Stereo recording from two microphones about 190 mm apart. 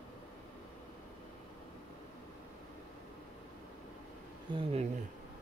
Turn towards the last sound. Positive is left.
turn(degrees=-30)  # may be behind; listen again after turning